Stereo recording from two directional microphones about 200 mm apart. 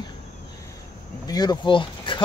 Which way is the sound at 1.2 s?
20° left (ahead or behind).